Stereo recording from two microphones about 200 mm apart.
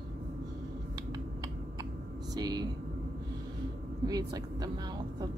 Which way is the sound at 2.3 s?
20° right (ahead or behind).